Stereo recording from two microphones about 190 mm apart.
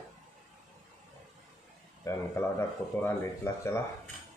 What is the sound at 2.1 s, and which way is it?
Speech, 15° left (ahead or behind).